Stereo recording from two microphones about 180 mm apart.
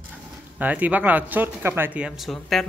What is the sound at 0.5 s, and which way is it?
Speech, 10° right (ahead or behind).